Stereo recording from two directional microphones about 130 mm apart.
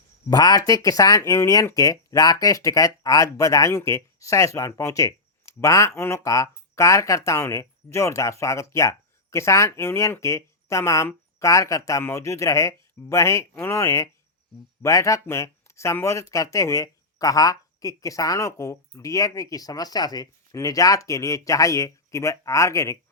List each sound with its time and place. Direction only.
0.3 s speech: 30° left (ahead or behind)